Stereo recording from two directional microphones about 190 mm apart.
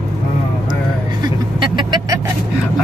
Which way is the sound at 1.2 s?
25° right (ahead or behind).